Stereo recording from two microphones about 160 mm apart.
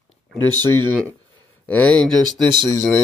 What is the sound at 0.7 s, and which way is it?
Speech, 15° left (ahead or behind).